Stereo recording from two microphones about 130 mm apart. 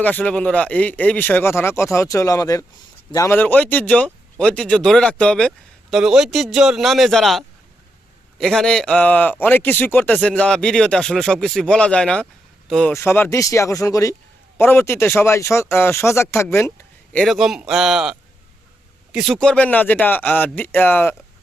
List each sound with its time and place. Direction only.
0.0 s speech: 10° left (ahead or behind); by 2.6 s 25° left (ahead or behind)
3.2 s speech: 15° left (ahead or behind)
12.9 s speech: 20° left (ahead or behind)
17.2 s speech: centre (ahead or behind); by 21.2 s 15° left (ahead or behind)